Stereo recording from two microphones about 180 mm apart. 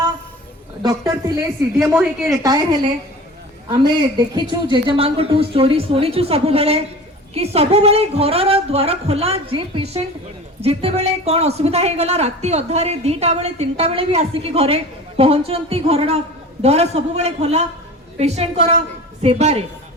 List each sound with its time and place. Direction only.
0.8 s speech: 20° right (ahead or behind)
1.8 s a woman's voice: 5° right (ahead or behind)
2.3 s speech: 20° right (ahead or behind)
3.7 s a woman's voice: 25° right (ahead or behind)